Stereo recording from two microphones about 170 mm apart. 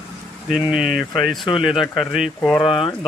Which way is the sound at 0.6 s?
5° right (ahead or behind).